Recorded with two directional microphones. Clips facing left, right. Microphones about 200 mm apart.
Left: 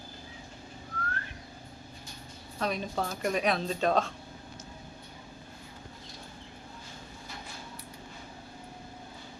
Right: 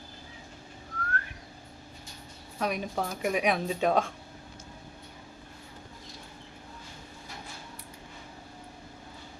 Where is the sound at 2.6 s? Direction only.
10° right (ahead or behind).